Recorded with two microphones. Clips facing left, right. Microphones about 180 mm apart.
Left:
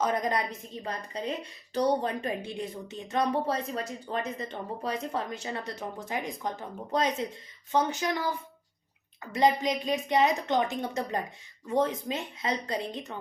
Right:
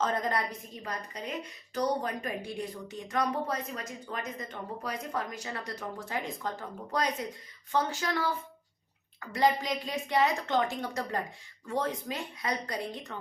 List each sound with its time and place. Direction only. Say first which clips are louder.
0.0 s speech: left 2 dB; 15° left (ahead or behind)